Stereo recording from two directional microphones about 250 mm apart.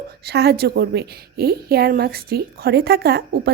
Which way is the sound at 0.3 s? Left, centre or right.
Right.